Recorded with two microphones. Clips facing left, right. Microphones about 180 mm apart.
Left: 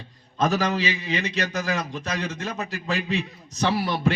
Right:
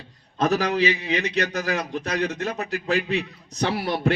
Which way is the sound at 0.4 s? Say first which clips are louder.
Right 2 dB; 65° right (ahead or behind).